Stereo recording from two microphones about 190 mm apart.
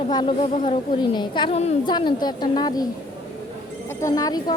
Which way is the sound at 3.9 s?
15° left (ahead or behind).